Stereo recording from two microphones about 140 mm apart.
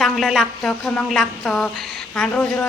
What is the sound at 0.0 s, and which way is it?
A woman's voice, centre (ahead or behind).